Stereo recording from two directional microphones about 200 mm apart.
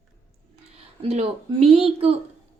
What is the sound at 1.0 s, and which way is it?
Speech, 30° right (ahead or behind).